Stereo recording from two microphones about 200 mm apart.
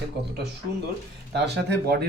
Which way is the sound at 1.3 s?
55° right (ahead or behind).